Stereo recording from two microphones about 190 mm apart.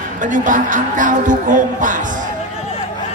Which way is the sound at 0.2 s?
45° right (ahead or behind).